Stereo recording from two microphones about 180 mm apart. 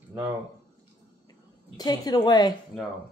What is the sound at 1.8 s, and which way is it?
Speech, 20° left (ahead or behind).